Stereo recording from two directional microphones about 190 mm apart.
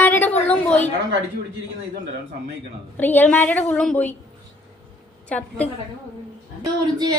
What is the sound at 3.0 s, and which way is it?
A woman's voice, 10° left (ahead or behind).